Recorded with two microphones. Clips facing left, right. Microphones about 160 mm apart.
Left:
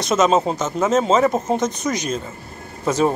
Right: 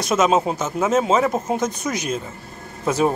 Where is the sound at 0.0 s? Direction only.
10° right (ahead or behind).